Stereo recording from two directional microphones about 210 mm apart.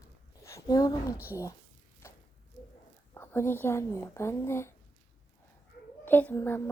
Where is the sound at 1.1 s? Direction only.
10° right (ahead or behind).